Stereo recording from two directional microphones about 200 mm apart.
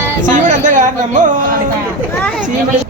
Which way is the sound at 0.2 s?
40° right (ahead or behind).